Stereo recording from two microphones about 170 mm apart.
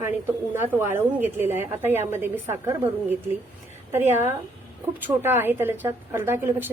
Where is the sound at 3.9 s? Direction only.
15° right (ahead or behind).